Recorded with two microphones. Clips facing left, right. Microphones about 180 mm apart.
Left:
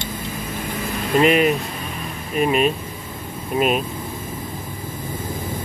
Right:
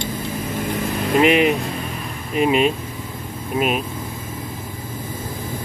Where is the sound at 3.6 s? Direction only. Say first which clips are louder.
Left 1 dB; 5° right (ahead or behind).